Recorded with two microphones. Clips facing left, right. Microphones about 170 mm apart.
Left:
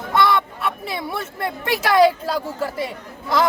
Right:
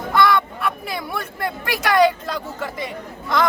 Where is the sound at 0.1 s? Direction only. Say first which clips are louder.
Right 1 dB; 25° left (ahead or behind).